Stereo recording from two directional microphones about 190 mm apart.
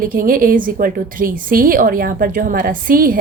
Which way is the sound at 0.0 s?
45° right (ahead or behind).